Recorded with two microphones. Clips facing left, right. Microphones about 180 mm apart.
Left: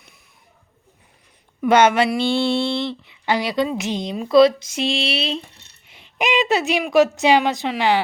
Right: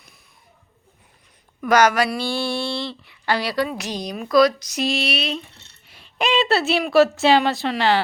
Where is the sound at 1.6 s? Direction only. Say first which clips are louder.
Left 2 dB; 25° left (ahead or behind).